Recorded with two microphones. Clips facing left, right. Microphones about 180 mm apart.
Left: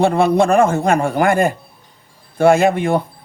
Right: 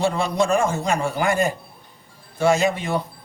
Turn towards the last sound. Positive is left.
turn(degrees=55)  # may be behind; listen again after turning